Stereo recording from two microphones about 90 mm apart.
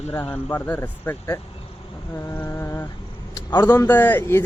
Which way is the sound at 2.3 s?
25° left (ahead or behind).